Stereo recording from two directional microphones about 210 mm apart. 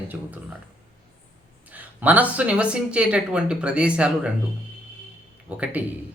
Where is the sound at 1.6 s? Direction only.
5° right (ahead or behind).